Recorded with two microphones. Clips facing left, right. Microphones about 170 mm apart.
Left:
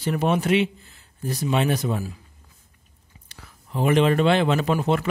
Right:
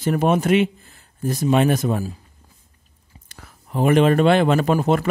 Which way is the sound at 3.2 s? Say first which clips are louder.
Right 2 dB; 50° right (ahead or behind).